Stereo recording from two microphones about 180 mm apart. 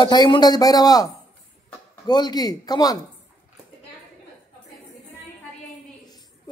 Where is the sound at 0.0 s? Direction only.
25° left (ahead or behind).